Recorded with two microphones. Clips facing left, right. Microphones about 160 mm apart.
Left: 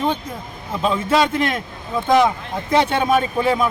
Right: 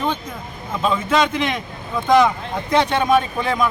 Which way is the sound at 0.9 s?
Centre (ahead or behind).